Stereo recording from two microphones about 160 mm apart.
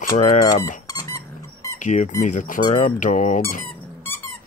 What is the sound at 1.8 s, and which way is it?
Speech, 50° left (ahead or behind).